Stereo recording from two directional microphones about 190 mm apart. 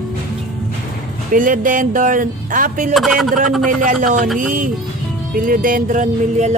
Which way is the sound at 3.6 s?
45° right (ahead or behind).